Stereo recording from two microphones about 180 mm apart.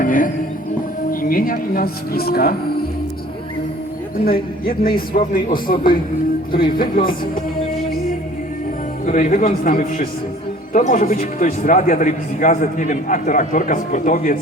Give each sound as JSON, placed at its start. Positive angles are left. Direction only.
{"t": 0.0, "sound": "music", "side_deg": 50}
{"t": 1.1, "sound": "speech", "side_deg": 50}
{"t": 4.3, "sound": "a man's voice", "side_deg": 55}
{"t": 9.0, "sound": "a man's voice", "side_deg": 45}